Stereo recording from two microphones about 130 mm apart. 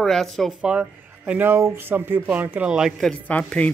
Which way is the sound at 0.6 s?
10° right (ahead or behind).